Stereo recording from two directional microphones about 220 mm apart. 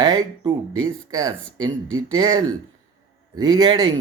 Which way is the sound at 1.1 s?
15° right (ahead or behind).